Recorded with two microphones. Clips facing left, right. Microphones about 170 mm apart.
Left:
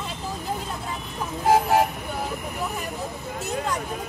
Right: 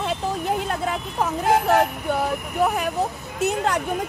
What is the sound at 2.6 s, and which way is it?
Speech, 70° right (ahead or behind).